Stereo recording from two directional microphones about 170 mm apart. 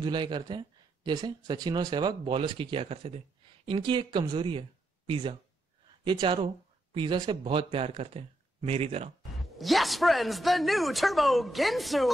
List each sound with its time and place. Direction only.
0.0 s speech: 25° right (ahead or behind)
9.4 s a man's voice: centre (ahead or behind)